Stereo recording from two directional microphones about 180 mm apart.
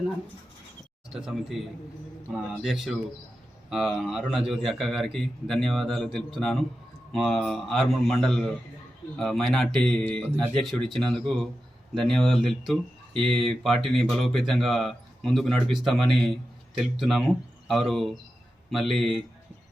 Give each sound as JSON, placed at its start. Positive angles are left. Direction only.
{"t": 1.1, "sound": "speech", "side_deg": -5}